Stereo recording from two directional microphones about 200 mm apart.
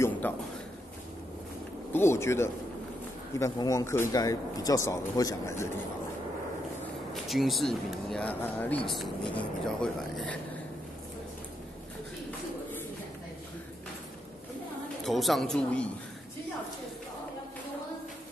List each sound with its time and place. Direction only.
0.2 s speech: 10° left (ahead or behind)
1.9 s speech: 10° left (ahead or behind)
7.2 s speech: centre (ahead or behind)
15.0 s speech: centre (ahead or behind)